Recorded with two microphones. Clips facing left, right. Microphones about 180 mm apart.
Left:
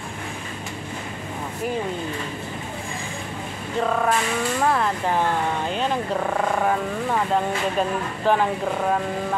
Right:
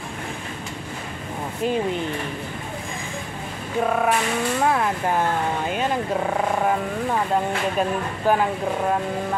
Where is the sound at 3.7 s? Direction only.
10° right (ahead or behind).